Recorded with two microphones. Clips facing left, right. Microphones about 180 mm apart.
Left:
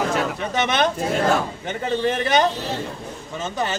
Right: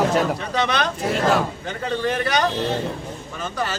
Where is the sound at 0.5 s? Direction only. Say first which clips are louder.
Left 4 dB; 20° left (ahead or behind).